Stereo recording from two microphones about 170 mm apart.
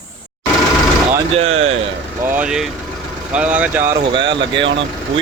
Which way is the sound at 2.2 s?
10° right (ahead or behind).